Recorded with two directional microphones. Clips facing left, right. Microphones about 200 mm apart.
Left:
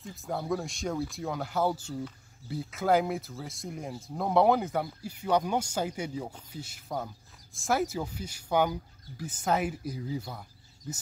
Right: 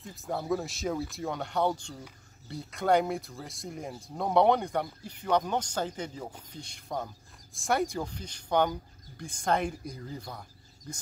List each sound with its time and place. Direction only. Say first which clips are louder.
0.0 s speech: even; centre (ahead or behind)